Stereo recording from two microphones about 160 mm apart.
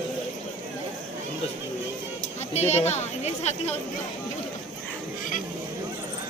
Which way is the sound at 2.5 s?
45° left (ahead or behind).